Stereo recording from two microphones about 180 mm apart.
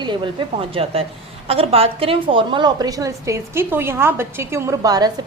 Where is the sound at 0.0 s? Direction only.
25° right (ahead or behind).